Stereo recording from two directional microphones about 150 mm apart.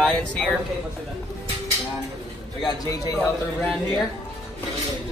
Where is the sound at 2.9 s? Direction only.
20° left (ahead or behind).